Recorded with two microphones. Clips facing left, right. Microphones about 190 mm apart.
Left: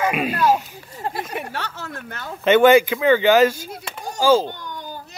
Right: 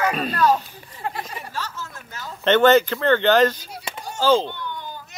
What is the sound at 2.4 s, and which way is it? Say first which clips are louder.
Speech: left 2 dB; 10° left (ahead or behind).